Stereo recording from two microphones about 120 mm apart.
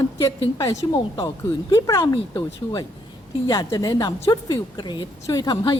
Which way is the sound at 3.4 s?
35° left (ahead or behind).